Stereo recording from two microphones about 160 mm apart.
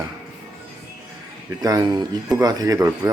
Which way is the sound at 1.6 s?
25° right (ahead or behind).